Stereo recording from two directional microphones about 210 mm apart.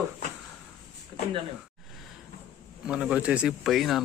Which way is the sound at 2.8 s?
5° right (ahead or behind).